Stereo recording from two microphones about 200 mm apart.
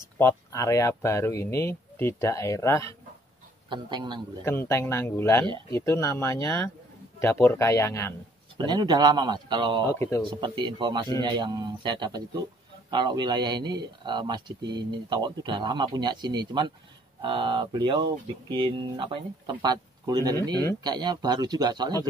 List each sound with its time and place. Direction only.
0.2 s speech: 15° left (ahead or behind)
3.6 s speech: 25° right (ahead or behind)
4.5 s speech: 10° left (ahead or behind)
8.5 s speech: 20° right (ahead or behind)
9.9 s speech: 15° left (ahead or behind)
10.4 s speech: 20° right (ahead or behind)